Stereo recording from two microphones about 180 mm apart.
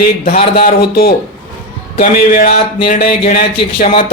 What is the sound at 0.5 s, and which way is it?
Speech, 60° left (ahead or behind).